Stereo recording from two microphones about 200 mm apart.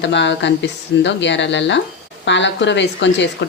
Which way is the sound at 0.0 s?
65° left (ahead or behind).